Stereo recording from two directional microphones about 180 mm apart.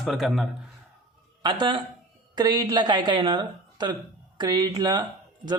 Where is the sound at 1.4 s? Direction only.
25° right (ahead or behind).